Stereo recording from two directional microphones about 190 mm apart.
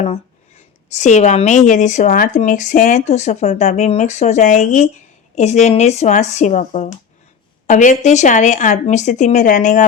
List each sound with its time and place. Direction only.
0.9 s a woman's voice: 40° left (ahead or behind)